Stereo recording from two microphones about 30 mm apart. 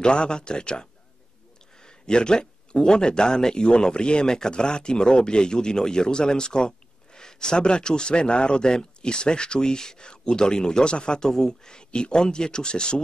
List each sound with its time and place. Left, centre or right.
0.0 s a man's voice: left
11.2 s a man's voice: centre